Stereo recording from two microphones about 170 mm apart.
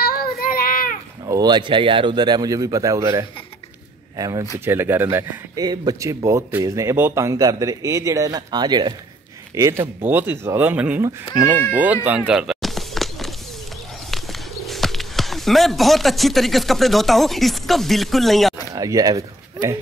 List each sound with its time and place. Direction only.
0.0 s child singing: 60° left (ahead or behind)
1.2 s speech: 25° right (ahead or behind); by 12.2 s 10° right (ahead or behind)
12.3 s a sound: 5° right (ahead or behind)
14.1 s speech: centre (ahead or behind)
18.8 s speech: 20° right (ahead or behind)